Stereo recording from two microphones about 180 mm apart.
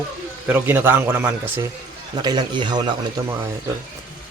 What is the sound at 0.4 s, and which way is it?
Speech, 10° right (ahead or behind).